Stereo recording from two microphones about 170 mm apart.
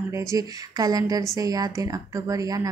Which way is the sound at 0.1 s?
20° right (ahead or behind).